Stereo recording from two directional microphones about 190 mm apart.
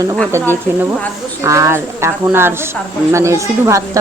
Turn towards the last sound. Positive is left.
turn(degrees=-15)  # may be behind; listen again after turning